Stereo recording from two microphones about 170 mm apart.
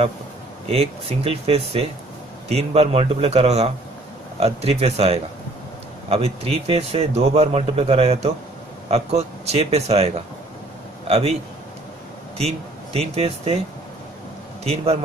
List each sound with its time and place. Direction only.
0.7 s speech: 35° right (ahead or behind)
12.4 s speech: 35° right (ahead or behind)
14.6 s speech: 40° right (ahead or behind)